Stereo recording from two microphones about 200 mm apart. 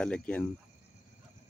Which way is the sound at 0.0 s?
5° left (ahead or behind).